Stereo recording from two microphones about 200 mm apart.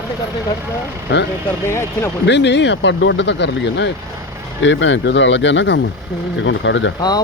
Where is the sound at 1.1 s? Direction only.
65° left (ahead or behind).